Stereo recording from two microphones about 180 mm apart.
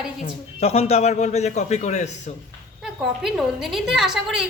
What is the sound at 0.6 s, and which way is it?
A man's voice, 35° left (ahead or behind).